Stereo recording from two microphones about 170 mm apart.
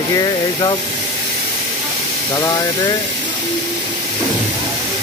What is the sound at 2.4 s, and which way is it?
Speech, 20° left (ahead or behind).